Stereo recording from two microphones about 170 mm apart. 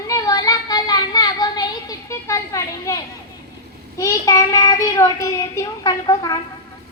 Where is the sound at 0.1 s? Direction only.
20° left (ahead or behind).